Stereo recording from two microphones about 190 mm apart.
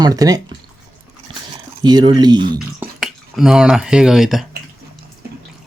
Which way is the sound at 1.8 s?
25° right (ahead or behind).